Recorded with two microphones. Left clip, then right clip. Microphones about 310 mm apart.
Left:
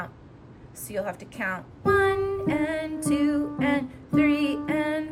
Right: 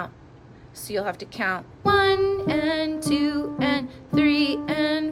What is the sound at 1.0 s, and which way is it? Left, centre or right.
Music, centre.